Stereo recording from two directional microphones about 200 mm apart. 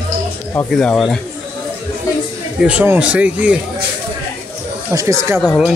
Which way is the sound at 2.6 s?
5° right (ahead or behind).